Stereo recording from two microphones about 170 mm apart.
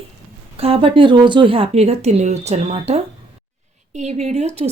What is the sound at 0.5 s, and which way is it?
A woman's voice, 35° right (ahead or behind).